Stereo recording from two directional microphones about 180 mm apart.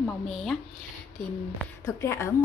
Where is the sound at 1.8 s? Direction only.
15° left (ahead or behind).